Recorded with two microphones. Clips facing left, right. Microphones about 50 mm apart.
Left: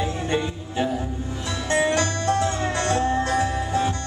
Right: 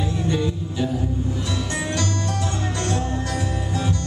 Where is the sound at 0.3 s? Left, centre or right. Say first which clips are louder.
Right 1 dB; left.